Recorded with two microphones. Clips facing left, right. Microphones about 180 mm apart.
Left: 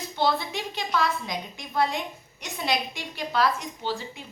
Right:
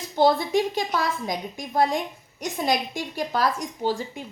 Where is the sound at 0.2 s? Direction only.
45° right (ahead or behind).